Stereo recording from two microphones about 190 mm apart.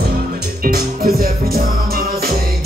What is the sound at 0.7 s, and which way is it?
Music, 50° right (ahead or behind).